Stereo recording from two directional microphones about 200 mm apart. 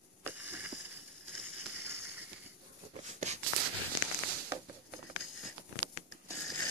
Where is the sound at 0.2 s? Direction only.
10° right (ahead or behind).